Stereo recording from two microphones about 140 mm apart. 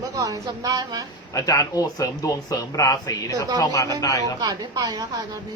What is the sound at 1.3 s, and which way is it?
Speech, 25° left (ahead or behind).